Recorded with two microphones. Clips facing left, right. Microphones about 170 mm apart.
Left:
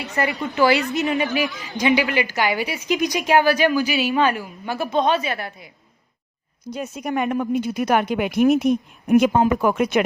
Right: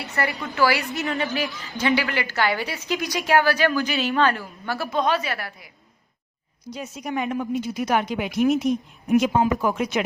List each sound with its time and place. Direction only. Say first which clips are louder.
0.2 s a woman's voice: left 3 dB; 20° left (ahead or behind)
6.7 s speech: left 4 dB; 55° left (ahead or behind)